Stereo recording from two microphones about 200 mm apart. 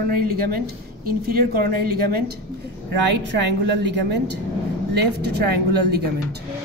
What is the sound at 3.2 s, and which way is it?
A woman's voice, 60° right (ahead or behind).